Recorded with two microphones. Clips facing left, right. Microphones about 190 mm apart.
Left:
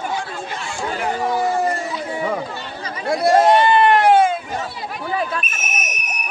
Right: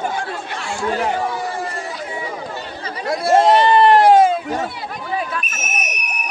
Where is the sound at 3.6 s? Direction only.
35° right (ahead or behind).